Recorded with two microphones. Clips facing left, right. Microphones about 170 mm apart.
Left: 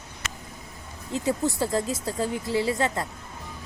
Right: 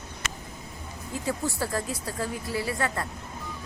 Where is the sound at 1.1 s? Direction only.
20° left (ahead or behind).